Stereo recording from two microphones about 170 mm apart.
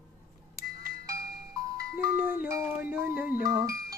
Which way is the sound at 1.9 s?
10° right (ahead or behind).